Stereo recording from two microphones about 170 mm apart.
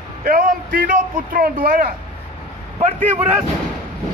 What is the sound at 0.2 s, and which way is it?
Speech, 55° right (ahead or behind).